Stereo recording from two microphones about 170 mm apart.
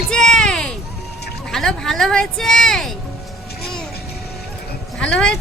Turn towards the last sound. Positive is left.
turn(degrees=5)  # may be behind; listen again after turning